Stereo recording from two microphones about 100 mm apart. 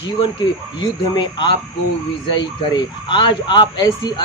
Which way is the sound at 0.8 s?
45° left (ahead or behind).